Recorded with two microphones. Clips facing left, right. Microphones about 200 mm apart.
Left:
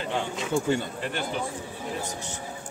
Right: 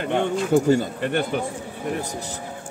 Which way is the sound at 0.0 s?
60° right (ahead or behind).